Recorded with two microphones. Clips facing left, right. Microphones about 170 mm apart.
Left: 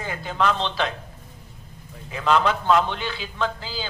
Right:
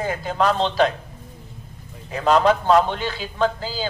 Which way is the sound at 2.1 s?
40° right (ahead or behind).